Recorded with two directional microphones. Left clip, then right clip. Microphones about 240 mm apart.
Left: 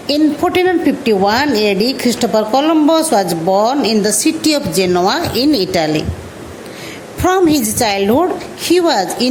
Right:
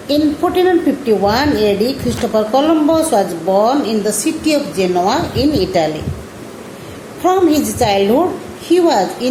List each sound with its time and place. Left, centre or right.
0.1 s a woman's voice: left
7.2 s a woman's voice: left